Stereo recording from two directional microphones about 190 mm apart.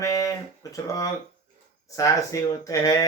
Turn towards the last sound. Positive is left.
turn(degrees=15)  # may be behind; listen again after turning